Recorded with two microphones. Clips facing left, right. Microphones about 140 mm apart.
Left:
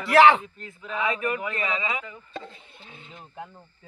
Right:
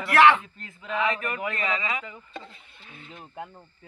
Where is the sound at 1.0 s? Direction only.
15° left (ahead or behind).